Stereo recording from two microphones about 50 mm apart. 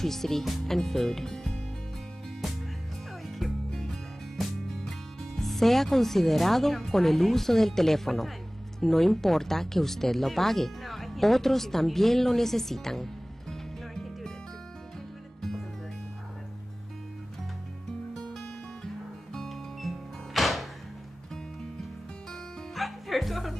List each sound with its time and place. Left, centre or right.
0.0 s speech: centre
3.3 s music: centre
8.7 s speech: centre
19.3 s music: centre
22.3 s music: centre